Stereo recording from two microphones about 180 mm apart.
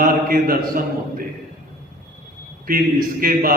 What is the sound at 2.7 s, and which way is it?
Speech, 55° right (ahead or behind).